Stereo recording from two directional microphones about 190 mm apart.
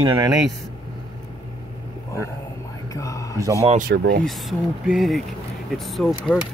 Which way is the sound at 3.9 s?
70° right (ahead or behind).